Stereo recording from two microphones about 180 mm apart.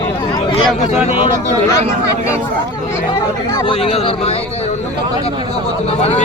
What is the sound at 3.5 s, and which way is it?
Speech, 30° left (ahead or behind).